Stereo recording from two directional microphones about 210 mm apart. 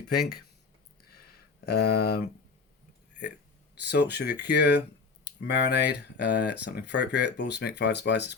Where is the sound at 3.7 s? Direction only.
50° left (ahead or behind).